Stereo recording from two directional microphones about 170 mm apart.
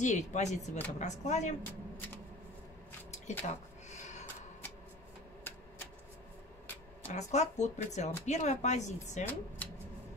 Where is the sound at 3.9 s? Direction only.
45° left (ahead or behind).